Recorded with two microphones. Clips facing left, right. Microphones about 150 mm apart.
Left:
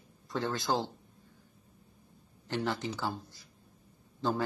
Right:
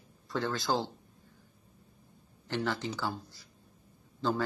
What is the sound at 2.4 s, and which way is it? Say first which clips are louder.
Speech: even; 20° left (ahead or behind).